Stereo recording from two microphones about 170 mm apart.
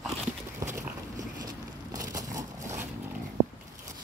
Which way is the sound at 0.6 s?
20° right (ahead or behind).